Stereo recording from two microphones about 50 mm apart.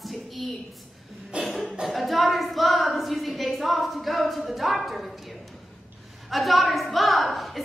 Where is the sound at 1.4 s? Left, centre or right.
Centre.